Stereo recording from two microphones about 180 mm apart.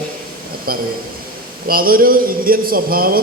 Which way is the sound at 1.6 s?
55° right (ahead or behind).